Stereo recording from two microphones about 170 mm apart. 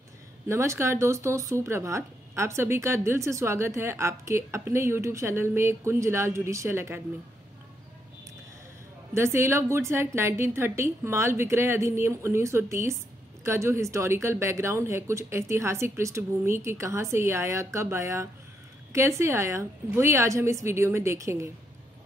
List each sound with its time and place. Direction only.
0.5 s speech: 15° right (ahead or behind)
9.1 s speech: 15° right (ahead or behind)